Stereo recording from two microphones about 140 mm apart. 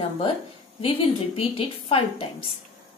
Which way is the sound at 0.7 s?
45° left (ahead or behind).